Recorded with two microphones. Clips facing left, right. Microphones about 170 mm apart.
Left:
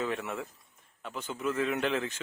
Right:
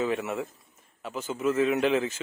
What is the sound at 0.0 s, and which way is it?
Speech, 5° right (ahead or behind).